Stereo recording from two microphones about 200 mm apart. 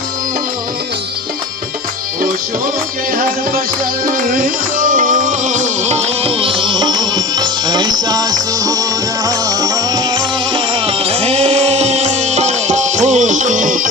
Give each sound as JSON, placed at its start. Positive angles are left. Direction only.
{"t": 3.2, "sound": "music", "side_deg": -45}